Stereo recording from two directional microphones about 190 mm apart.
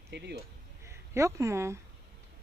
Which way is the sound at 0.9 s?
15° right (ahead or behind).